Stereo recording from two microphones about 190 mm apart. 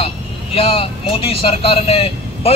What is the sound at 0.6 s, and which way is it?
Speech, 30° left (ahead or behind).